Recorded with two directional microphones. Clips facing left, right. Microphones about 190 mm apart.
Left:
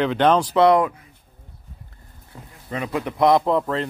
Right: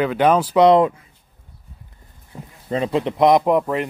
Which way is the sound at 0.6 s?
25° right (ahead or behind).